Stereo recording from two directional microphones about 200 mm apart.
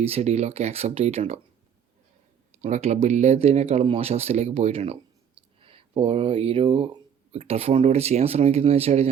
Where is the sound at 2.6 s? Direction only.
35° right (ahead or behind).